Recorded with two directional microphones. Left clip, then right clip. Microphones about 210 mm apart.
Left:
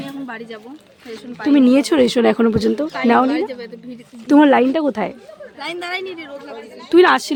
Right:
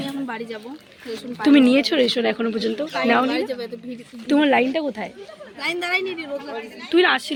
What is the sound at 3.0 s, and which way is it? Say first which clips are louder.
Speech: left 4 dB; 20° left (ahead or behind).